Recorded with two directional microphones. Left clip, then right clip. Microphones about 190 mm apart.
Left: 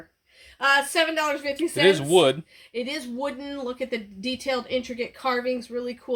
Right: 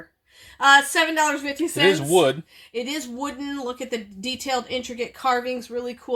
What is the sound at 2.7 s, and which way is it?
Speech, 55° right (ahead or behind).